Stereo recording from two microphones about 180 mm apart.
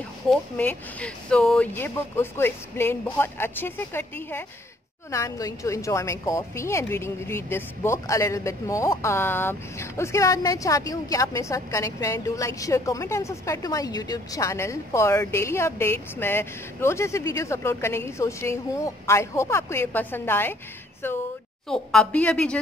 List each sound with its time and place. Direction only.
0.3 s a woman's voice: 10° left (ahead or behind)